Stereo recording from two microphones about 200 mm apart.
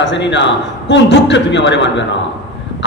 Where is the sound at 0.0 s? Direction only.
60° left (ahead or behind).